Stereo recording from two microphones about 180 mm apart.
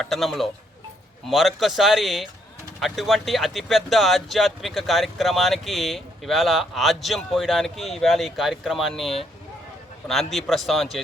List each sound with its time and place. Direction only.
0.0 s speech: centre (ahead or behind)